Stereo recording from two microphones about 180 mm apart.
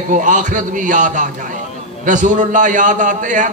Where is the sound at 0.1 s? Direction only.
45° right (ahead or behind).